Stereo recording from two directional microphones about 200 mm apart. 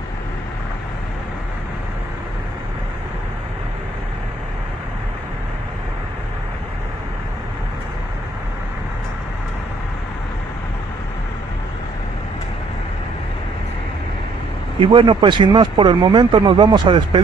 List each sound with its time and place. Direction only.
14.8 s speech: 25° right (ahead or behind)